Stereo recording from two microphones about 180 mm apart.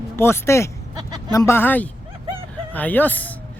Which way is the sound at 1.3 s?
15° left (ahead or behind).